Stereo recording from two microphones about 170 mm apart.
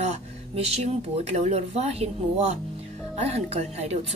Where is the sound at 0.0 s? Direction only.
40° right (ahead or behind).